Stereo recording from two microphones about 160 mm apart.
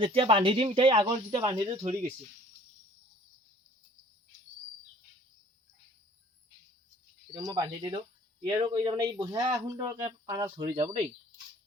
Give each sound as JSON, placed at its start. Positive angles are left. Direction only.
{"t": 0.0, "sound": "speech", "side_deg": -35}
{"t": 7.3, "sound": "speech", "side_deg": -25}